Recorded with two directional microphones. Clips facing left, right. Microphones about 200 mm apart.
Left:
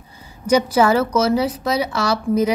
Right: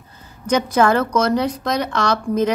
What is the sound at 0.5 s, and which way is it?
A woman's voice, 10° left (ahead or behind).